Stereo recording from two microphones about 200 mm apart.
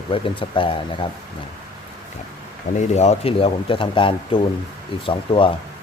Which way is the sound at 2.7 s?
35° left (ahead or behind).